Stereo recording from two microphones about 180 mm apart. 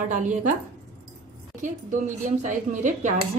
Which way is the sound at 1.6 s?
45° right (ahead or behind).